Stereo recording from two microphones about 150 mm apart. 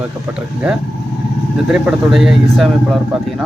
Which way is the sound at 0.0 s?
5° right (ahead or behind).